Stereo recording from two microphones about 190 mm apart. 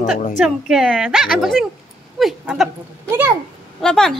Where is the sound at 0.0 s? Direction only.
40° left (ahead or behind).